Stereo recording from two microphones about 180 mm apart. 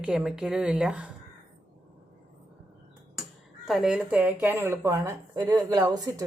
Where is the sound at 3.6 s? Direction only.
Centre (ahead or behind).